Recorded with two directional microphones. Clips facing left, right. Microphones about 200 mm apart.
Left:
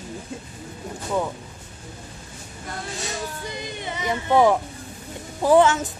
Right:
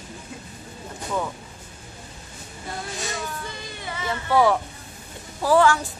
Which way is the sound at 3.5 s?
20° left (ahead or behind).